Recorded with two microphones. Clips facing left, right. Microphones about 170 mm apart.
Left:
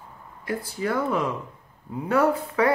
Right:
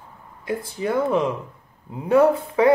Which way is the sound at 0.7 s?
20° right (ahead or behind).